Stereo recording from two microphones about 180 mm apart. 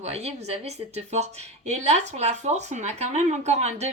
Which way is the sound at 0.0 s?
35° right (ahead or behind).